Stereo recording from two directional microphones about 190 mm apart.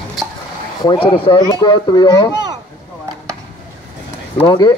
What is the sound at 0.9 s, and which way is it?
Speech, 25° left (ahead or behind).